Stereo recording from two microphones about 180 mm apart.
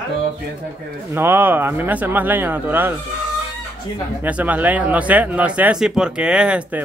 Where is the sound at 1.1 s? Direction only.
10° right (ahead or behind).